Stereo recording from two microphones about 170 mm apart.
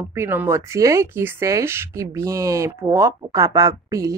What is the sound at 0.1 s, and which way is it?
Speech, 15° right (ahead or behind).